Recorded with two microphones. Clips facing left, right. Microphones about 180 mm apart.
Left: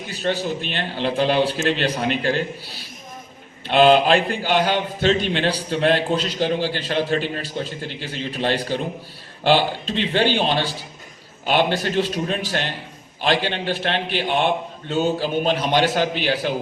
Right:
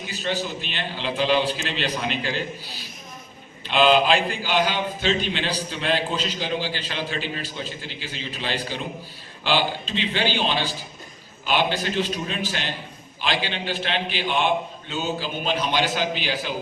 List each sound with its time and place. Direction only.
0.1 s a man's voice: 55° left (ahead or behind)
3.7 s a man's voice: 55° left (ahead or behind)